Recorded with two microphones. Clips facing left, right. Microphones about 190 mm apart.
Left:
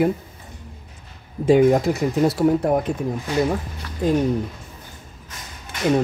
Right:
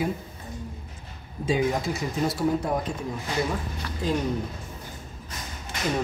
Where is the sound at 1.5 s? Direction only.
55° left (ahead or behind).